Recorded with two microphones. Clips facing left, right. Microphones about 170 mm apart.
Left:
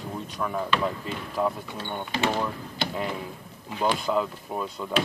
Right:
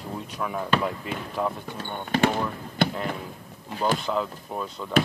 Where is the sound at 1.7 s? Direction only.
50° right (ahead or behind).